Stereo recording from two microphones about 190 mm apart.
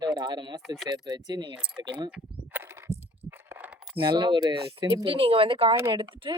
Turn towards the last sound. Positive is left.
turn(degrees=-25)  # may be behind; listen again after turning